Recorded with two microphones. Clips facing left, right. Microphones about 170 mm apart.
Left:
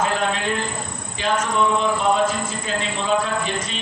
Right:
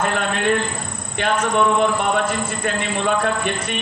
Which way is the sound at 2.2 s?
65° right (ahead or behind).